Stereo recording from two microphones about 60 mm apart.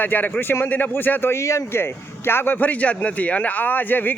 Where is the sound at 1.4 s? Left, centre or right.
Left.